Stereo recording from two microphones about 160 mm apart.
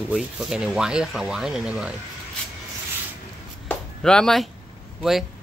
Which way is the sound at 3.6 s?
5° left (ahead or behind).